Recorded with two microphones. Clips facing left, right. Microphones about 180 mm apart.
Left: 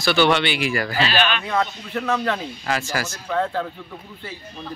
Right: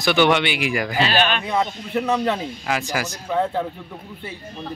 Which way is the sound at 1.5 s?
15° right (ahead or behind).